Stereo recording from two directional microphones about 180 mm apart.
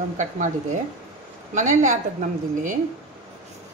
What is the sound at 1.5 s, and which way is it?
A woman's voice, 45° right (ahead or behind).